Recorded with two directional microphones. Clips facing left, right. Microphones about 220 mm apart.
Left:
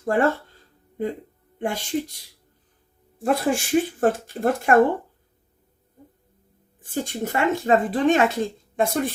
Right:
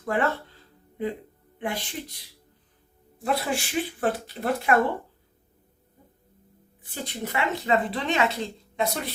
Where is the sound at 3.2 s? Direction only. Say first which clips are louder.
Left 5 dB; 45° left (ahead or behind).